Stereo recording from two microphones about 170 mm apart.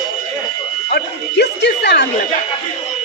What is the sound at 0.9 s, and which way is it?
Speech, 80° left.